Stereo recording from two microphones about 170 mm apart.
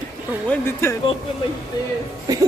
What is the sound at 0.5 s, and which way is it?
Speech, 15° left (ahead or behind).